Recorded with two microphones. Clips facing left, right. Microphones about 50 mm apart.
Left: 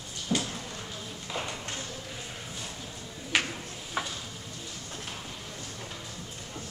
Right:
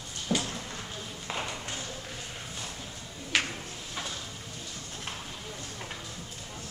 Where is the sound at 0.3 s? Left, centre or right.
Centre.